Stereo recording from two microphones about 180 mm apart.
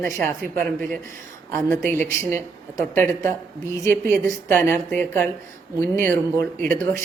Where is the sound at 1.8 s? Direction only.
10° left (ahead or behind).